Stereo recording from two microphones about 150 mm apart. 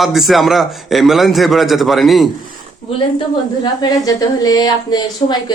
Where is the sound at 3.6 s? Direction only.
25° left (ahead or behind).